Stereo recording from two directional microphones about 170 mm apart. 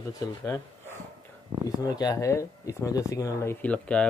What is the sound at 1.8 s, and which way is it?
Speech, 20° left (ahead or behind).